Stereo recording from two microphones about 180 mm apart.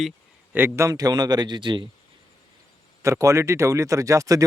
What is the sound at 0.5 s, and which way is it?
A man's voice, 15° right (ahead or behind).